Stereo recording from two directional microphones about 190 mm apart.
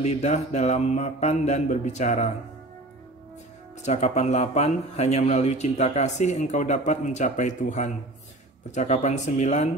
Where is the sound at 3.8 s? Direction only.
35° left (ahead or behind).